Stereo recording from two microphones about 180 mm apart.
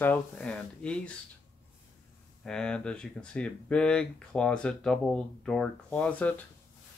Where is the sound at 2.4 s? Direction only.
5° left (ahead or behind).